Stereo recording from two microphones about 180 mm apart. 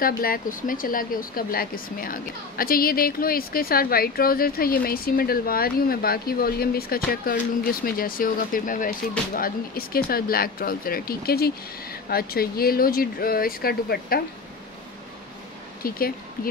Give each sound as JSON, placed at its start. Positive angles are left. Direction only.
{"t": 0.0, "sound": "speech", "side_deg": 55}
{"t": 15.8, "sound": "speech", "side_deg": 55}